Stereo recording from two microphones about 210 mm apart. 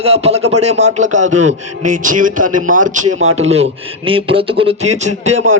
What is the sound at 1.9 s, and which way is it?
A man's voice, 40° right (ahead or behind).